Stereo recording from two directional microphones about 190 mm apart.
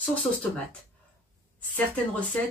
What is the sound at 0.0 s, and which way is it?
Speech, 5° left (ahead or behind).